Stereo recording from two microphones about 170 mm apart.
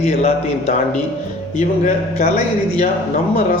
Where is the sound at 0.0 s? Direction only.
35° left (ahead or behind).